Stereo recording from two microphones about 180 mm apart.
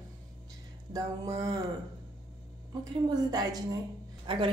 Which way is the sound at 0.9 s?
20° right (ahead or behind).